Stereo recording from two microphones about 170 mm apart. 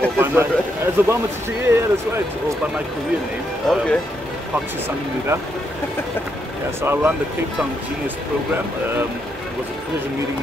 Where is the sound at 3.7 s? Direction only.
5° left (ahead or behind).